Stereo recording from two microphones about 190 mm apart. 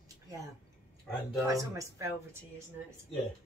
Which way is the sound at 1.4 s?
15° right (ahead or behind).